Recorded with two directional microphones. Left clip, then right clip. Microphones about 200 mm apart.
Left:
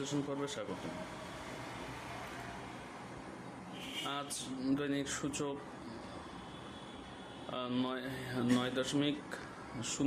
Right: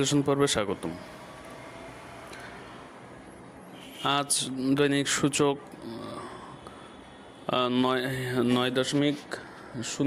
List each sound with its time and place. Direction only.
0.0 s speech: 50° right (ahead or behind)
4.0 s speech: 50° right (ahead or behind)
7.5 s speech: 45° right (ahead or behind)